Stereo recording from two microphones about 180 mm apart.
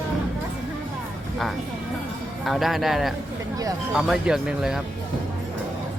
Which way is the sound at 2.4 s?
Centre (ahead or behind).